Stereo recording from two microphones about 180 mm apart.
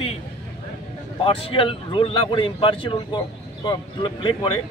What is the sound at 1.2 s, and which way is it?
Speech, 30° left (ahead or behind).